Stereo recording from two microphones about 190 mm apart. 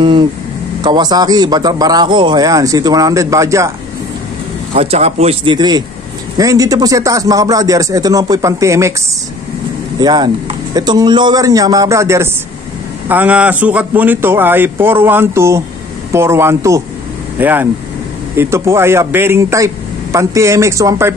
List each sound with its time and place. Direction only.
0.8 s a man's voice: 20° right (ahead or behind)
4.7 s a man's voice: 35° right (ahead or behind); by 8.9 s 15° right (ahead or behind)
9.9 s a man's voice: 20° right (ahead or behind)